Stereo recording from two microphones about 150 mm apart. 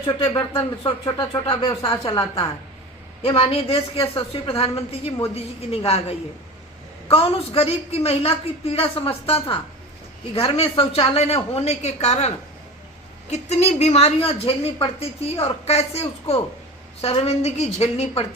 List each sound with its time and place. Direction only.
0.0 s a woman's voice: 35° left (ahead or behind)
13.3 s a woman's voice: 45° left (ahead or behind)